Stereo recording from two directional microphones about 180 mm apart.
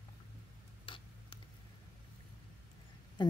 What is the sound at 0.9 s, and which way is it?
Tick-tock, 30° left (ahead or behind).